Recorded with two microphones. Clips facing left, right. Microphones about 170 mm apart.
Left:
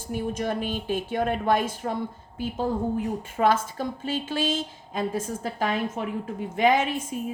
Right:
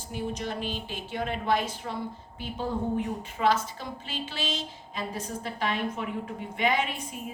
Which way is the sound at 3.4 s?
50° left (ahead or behind).